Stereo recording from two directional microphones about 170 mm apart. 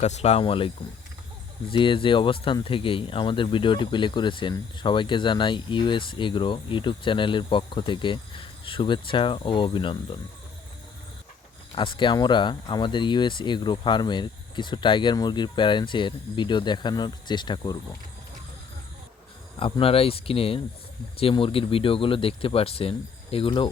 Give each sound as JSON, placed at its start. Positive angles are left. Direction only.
{"t": 0.0, "sound": "speech", "side_deg": 40}
{"t": 1.7, "sound": "speech", "side_deg": 30}
{"t": 11.7, "sound": "speech", "side_deg": 30}
{"t": 19.5, "sound": "speech", "side_deg": 30}